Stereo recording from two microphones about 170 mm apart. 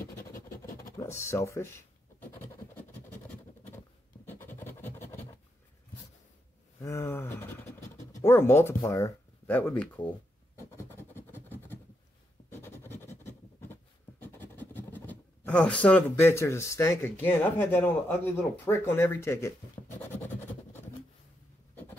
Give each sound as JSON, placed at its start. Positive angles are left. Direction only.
{"t": 0.0, "sound": "vehicle", "side_deg": 55}
{"t": 0.9, "sound": "scratch", "side_deg": 15}
{"t": 6.8, "sound": "speech", "side_deg": 15}
{"t": 10.6, "sound": "scratch", "side_deg": 15}
{"t": 14.2, "sound": "speech", "side_deg": 10}